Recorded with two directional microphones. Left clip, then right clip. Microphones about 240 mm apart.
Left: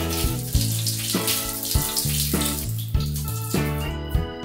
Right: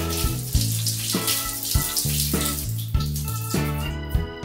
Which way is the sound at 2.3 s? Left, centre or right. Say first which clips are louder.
Left 1 dB; centre.